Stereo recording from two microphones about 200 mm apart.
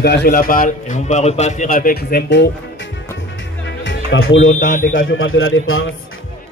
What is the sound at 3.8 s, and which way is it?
Music, 80° left.